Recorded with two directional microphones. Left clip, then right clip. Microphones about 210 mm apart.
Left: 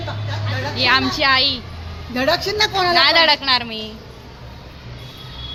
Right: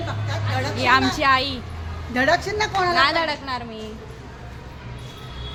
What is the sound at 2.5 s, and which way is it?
Speech, 45° left (ahead or behind).